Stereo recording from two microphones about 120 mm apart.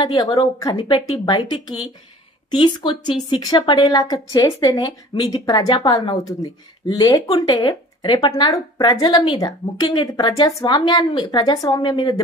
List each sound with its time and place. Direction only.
0.0 s a woman's voice: 35° left (ahead or behind)
0.7 s a woman's voice: 45° left (ahead or behind)
3.8 s a woman's voice: 30° left (ahead or behind)